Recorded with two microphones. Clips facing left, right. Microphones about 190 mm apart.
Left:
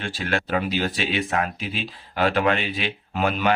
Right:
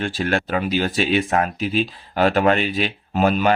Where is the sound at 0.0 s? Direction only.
45° right (ahead or behind).